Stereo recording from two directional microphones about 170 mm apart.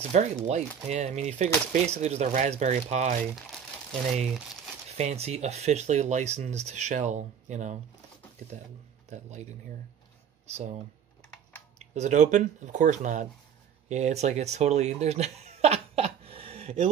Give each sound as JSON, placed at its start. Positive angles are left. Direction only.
{"t": 0.1, "sound": "speech", "side_deg": -45}
{"t": 4.9, "sound": "speech", "side_deg": -40}
{"t": 9.1, "sound": "speech", "side_deg": -45}
{"t": 11.8, "sound": "speech", "side_deg": -45}